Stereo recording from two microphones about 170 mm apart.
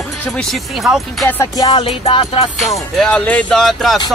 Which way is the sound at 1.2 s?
20° left (ahead or behind).